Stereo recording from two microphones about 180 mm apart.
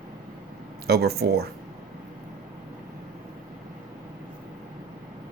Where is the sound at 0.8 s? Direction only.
60° right (ahead or behind).